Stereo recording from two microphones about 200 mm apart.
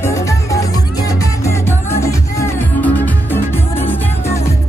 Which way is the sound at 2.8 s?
10° left (ahead or behind).